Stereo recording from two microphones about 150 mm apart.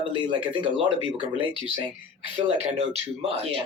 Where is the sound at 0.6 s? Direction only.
35° right (ahead or behind).